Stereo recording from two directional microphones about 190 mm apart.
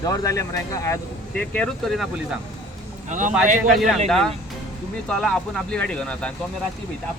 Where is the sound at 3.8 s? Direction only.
Centre (ahead or behind).